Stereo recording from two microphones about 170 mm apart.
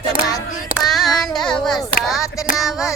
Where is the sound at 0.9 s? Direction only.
Centre (ahead or behind).